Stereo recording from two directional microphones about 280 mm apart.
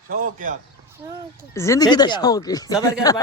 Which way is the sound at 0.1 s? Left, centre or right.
Right.